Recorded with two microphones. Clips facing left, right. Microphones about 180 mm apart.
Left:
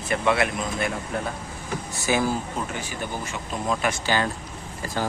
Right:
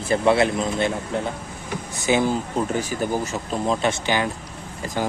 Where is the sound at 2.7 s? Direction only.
40° right (ahead or behind).